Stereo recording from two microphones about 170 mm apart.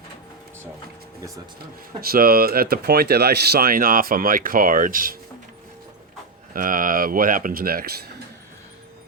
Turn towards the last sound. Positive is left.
turn(degrees=-60)  # may be behind; listen again after turning